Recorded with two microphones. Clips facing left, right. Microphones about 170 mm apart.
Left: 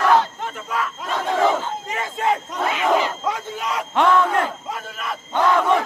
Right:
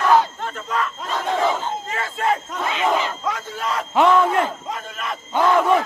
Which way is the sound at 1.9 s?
15° left (ahead or behind).